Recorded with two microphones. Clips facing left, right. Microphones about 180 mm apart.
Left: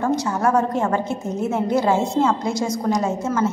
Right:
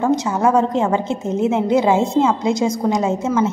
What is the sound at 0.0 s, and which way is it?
A woman's voice, 20° right (ahead or behind).